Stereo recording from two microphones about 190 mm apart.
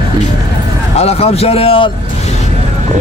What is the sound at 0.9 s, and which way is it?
Speech, 30° left (ahead or behind).